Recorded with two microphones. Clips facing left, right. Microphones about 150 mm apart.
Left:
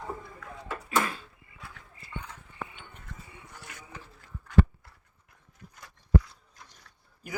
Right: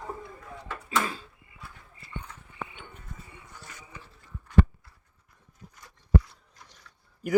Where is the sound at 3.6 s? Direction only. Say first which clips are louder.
Left 1 dB; 90° left.